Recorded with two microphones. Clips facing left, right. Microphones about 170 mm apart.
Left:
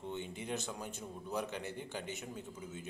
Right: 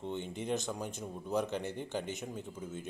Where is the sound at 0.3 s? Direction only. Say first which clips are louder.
Right 5 dB; 20° right (ahead or behind).